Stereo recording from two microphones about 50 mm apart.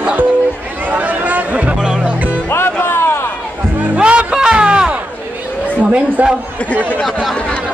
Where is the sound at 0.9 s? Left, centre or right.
Right.